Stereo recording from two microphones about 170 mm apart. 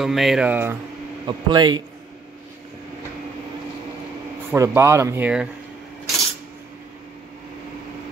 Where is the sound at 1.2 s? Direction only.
25° right (ahead or behind).